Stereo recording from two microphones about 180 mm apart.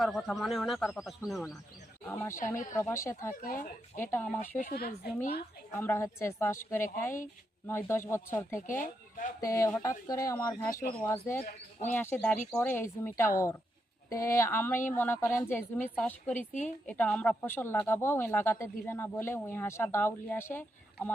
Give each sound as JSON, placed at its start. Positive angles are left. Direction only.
{"t": 0.0, "sound": "speech", "side_deg": 0}
{"t": 2.0, "sound": "a woman's voice", "side_deg": 10}
{"t": 3.4, "sound": "speech", "side_deg": 50}
{"t": 4.0, "sound": "a woman's voice", "side_deg": 10}
{"t": 4.5, "sound": "a woman's voice", "side_deg": 55}
{"t": 5.7, "sound": "a woman's voice", "side_deg": 10}
{"t": 8.6, "sound": "speech", "side_deg": 45}
{"t": 9.4, "sound": "a woman's voice", "side_deg": 15}
{"t": 16.5, "sound": "speech", "side_deg": 45}
{"t": 16.8, "sound": "a woman's voice", "side_deg": 5}